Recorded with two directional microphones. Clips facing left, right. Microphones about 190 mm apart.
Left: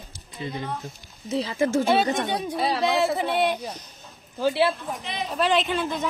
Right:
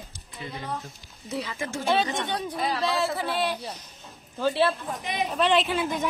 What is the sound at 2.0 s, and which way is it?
Speech, 45° left (ahead or behind).